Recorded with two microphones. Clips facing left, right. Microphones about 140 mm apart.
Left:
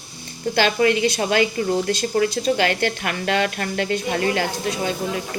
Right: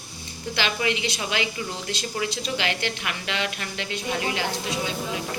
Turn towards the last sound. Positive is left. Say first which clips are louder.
# left 4 dB
turn(degrees=50)  # may be behind; listen again after turning